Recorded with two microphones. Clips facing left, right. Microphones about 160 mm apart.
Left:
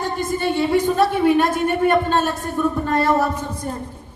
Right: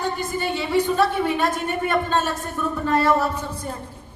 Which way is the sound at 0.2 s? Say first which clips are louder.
Left 5 dB; 50° left (ahead or behind).